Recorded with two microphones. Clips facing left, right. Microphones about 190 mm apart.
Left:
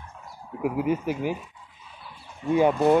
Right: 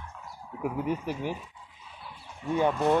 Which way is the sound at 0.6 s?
5° left (ahead or behind).